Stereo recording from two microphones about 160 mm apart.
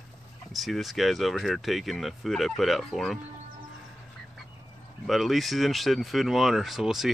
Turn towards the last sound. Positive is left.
turn(degrees=0)  # may be behind; listen again after turning